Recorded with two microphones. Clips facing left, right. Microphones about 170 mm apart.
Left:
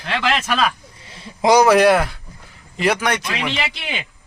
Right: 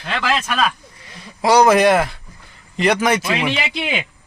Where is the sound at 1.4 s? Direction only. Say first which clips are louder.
Even; 10° left (ahead or behind).